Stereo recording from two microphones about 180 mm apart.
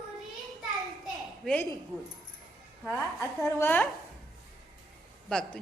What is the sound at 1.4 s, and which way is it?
Speech, 10° left (ahead or behind).